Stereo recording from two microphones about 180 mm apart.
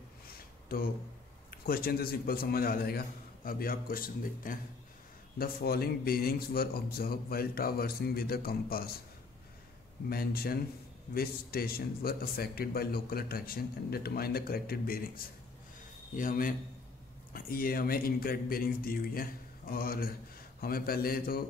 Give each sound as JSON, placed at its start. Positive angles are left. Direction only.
{"t": 1.5, "sound": "a man's voice", "side_deg": 55}
{"t": 10.0, "sound": "a man's voice", "side_deg": 55}